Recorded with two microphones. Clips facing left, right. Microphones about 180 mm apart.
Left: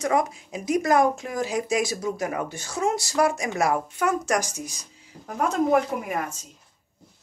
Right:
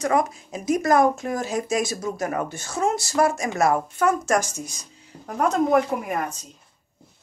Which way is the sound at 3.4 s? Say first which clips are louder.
Right 3 dB; 45° right (ahead or behind).